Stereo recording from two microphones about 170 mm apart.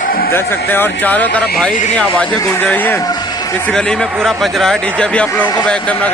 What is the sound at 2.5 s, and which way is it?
Speech, 10° left (ahead or behind).